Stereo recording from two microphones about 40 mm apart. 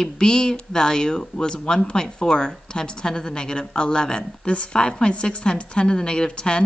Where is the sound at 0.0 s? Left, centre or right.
Centre.